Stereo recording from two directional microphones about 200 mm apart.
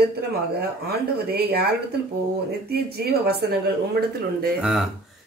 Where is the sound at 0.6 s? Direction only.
50° right (ahead or behind).